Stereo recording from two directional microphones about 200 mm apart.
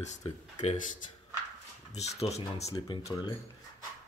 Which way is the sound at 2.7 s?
20° left (ahead or behind).